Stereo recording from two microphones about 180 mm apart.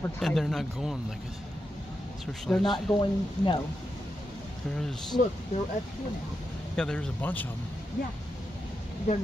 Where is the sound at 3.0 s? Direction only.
25° left (ahead or behind).